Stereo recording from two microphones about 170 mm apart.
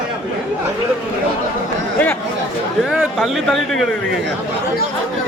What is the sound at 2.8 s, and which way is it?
Speech, centre (ahead or behind).